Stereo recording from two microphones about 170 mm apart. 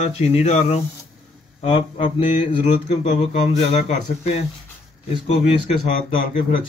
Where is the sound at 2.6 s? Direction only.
40° left (ahead or behind).